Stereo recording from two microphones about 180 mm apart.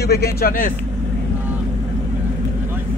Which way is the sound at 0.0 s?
60° left (ahead or behind).